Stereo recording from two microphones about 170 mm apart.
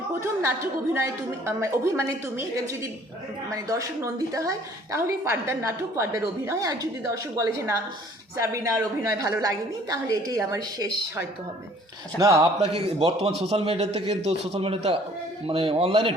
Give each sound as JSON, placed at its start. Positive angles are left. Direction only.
{"t": 0.2, "sound": "a woman's voice", "side_deg": -15}
{"t": 12.5, "sound": "a man's voice", "side_deg": -35}